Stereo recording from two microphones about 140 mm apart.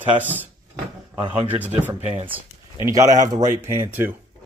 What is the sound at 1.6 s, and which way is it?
Speech, 10° right (ahead or behind).